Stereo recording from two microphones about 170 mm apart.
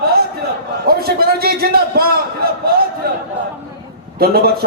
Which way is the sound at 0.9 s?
65° right (ahead or behind).